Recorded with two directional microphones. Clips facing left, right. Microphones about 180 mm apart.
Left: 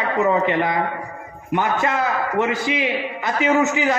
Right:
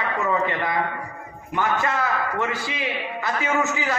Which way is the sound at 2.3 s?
20° left (ahead or behind).